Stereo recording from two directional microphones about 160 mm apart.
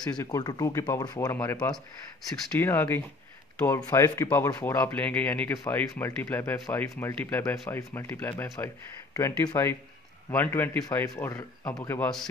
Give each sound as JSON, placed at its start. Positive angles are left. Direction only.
{"t": 0.2, "sound": "speech", "side_deg": 25}
{"t": 1.3, "sound": "speech", "side_deg": 15}
{"t": 12.0, "sound": "speech", "side_deg": 0}